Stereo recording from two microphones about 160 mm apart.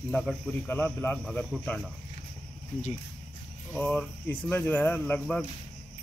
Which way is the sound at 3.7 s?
5° left (ahead or behind).